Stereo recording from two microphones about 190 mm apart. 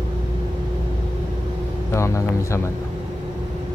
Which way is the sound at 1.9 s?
15° left (ahead or behind).